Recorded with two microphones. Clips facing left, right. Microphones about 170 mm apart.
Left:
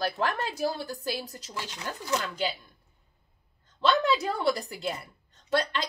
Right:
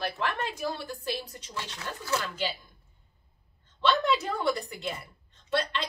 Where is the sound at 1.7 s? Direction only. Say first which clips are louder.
Left 1 dB; 15° left (ahead or behind).